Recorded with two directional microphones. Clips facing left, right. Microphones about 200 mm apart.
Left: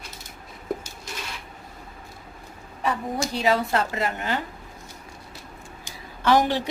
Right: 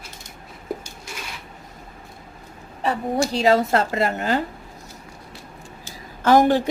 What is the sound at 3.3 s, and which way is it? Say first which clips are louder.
A woman's voice: right 4 dB; 40° right (ahead or behind).